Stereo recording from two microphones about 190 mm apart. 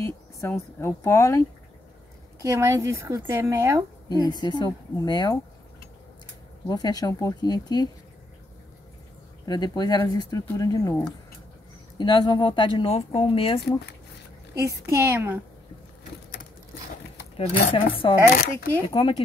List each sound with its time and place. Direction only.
0.0 s speech: 15° left (ahead or behind)
2.4 s a woman's voice: 15° right (ahead or behind)
4.1 s speech: 20° left (ahead or behind)
6.7 s speech: 20° left (ahead or behind)
9.5 s speech: 20° left (ahead or behind)
12.0 s speech: 25° left (ahead or behind)
14.6 s a woman's voice: 15° right (ahead or behind)
17.7 s speech: 30° left (ahead or behind)
18.3 s speech: 50° left (ahead or behind)
18.9 s speech: 25° left (ahead or behind)